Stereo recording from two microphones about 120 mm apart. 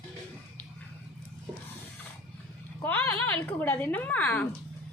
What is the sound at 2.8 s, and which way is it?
A woman's voice, 15° left (ahead or behind).